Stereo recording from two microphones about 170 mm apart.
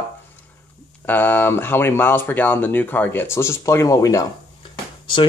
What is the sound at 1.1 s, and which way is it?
Speech, 10° left (ahead or behind).